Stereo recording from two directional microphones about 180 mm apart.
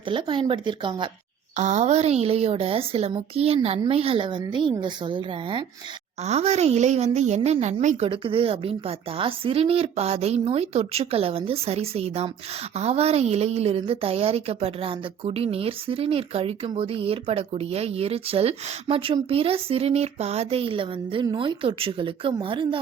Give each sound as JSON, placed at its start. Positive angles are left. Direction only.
{"t": 0.1, "sound": "a woman's voice", "side_deg": -30}
{"t": 1.5, "sound": "a woman's voice", "side_deg": -40}
{"t": 6.2, "sound": "a woman's voice", "side_deg": -35}